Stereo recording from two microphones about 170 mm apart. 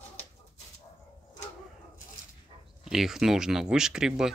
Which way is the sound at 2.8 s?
Centre (ahead or behind).